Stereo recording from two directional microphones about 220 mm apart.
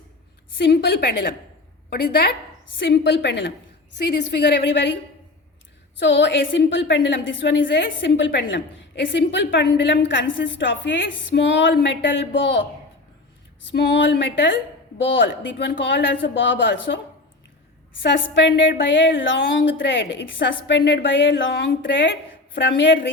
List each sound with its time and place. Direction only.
0.7 s a woman's voice: 50° left (ahead or behind)
6.0 s a woman's voice: 55° left (ahead or behind)
13.7 s a woman's voice: 50° left (ahead or behind)
18.0 s a woman's voice: 55° left (ahead or behind)